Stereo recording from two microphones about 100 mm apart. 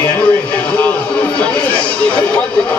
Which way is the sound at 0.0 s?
20° left (ahead or behind).